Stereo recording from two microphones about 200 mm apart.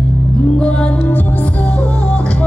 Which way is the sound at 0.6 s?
5° left (ahead or behind).